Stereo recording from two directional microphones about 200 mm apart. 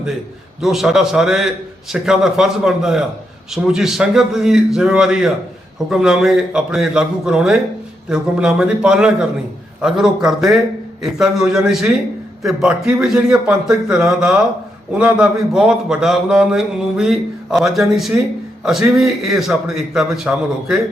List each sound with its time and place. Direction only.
0.6 s a man's voice: centre (ahead or behind)